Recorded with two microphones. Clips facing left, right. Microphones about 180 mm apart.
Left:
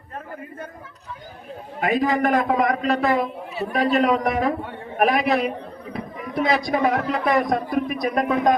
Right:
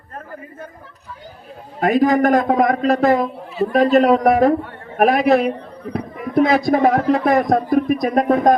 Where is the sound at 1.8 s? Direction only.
40° right (ahead or behind).